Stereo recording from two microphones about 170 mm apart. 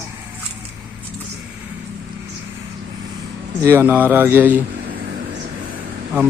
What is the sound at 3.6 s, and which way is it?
Mantra, 15° right (ahead or behind).